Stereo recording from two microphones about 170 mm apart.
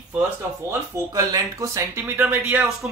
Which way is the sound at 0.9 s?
20° right (ahead or behind).